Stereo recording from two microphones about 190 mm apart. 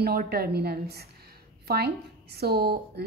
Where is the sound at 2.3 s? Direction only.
55° right (ahead or behind).